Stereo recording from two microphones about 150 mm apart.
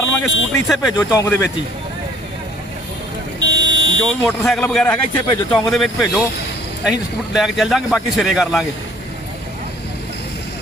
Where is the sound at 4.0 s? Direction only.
Centre (ahead or behind).